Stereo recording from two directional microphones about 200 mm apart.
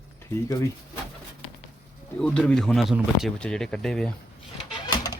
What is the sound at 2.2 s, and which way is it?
Speech, 5° left (ahead or behind).